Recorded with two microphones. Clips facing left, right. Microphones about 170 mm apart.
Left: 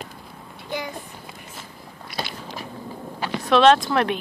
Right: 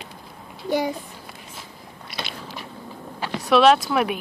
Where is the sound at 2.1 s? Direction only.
25° right (ahead or behind).